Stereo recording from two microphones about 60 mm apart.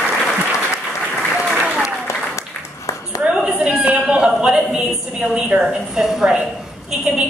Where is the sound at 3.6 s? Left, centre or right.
Centre.